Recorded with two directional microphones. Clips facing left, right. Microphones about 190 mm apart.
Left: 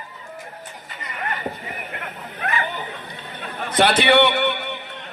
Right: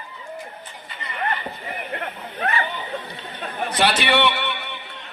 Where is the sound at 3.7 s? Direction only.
55° left (ahead or behind).